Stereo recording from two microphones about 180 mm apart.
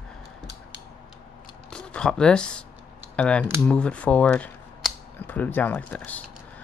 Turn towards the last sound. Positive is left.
turn(degrees=10)  # may be behind; listen again after turning